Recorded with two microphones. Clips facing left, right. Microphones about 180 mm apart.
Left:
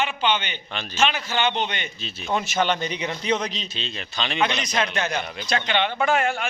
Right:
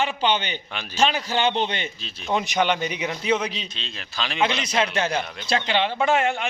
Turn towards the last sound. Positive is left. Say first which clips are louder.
# right 1 dB
turn(degrees=-20)  # may be behind; listen again after turning